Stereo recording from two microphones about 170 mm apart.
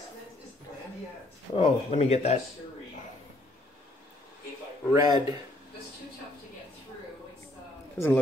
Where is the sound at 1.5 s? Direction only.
35° left (ahead or behind).